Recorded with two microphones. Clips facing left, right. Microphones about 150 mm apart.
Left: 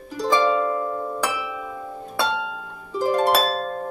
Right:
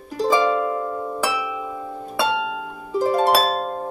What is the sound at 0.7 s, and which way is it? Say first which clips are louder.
Harp: even; 10° right (ahead or behind).